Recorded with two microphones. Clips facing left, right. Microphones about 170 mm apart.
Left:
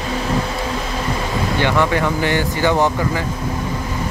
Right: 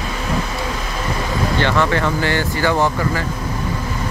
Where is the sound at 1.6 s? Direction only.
15° left (ahead or behind).